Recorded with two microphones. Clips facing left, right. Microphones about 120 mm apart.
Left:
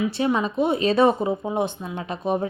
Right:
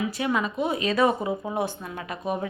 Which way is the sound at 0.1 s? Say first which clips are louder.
Left 4 dB; 30° left (ahead or behind).